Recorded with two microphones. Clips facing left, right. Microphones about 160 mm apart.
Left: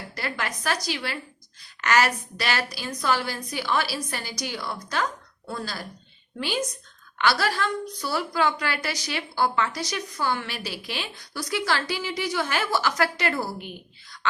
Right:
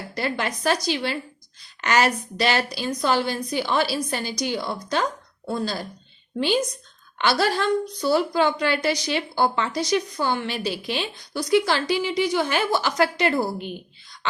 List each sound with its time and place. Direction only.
0.1 s a woman's voice: 25° right (ahead or behind)